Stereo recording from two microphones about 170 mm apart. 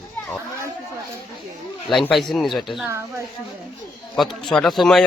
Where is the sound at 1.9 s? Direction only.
Centre (ahead or behind).